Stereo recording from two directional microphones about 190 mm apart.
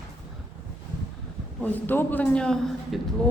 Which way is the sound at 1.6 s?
10° left (ahead or behind).